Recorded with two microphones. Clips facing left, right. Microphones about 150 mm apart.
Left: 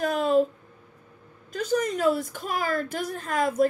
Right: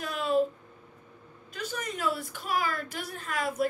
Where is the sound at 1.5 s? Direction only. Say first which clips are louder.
Left 10 dB; 45° left (ahead or behind).